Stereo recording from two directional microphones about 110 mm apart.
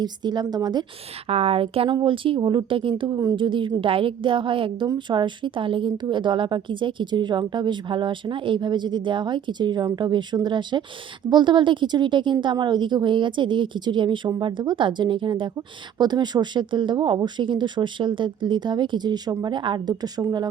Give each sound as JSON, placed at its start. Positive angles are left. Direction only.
{"t": 0.0, "sound": "speech", "side_deg": -40}
{"t": 1.3, "sound": "a woman's voice", "side_deg": -65}
{"t": 3.1, "sound": "speech", "side_deg": -30}
{"t": 3.3, "sound": "a woman's voice", "side_deg": -50}